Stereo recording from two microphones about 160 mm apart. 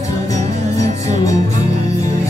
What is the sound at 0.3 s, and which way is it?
Music, 20° left (ahead or behind).